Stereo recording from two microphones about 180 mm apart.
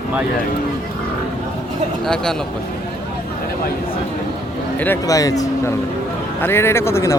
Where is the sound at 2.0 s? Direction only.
5° left (ahead or behind).